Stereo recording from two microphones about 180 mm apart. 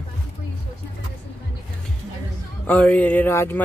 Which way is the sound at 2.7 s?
10° left (ahead or behind).